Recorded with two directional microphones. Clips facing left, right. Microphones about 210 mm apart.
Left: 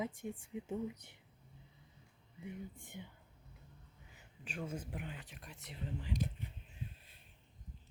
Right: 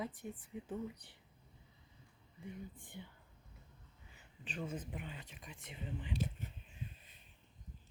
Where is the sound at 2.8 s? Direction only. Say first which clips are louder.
Left 1 dB; 20° left (ahead or behind).